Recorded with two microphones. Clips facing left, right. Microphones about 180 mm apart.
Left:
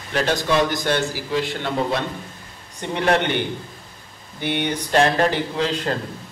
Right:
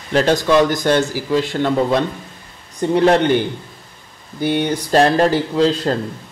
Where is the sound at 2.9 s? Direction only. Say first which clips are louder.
Right 7 dB; 35° right (ahead or behind).